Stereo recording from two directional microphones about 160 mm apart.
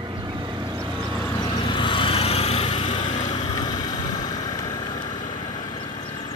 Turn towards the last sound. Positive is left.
turn(degrees=30)  # may be behind; listen again after turning